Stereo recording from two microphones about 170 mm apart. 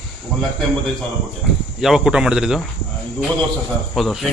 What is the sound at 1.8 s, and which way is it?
Speech, centre (ahead or behind).